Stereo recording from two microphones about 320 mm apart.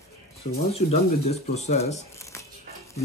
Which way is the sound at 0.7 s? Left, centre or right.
Centre.